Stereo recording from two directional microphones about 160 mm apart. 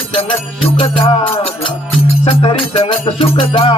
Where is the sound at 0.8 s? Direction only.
35° left (ahead or behind).